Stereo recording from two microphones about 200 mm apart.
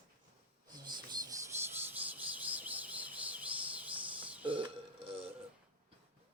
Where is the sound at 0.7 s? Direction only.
20° right (ahead or behind).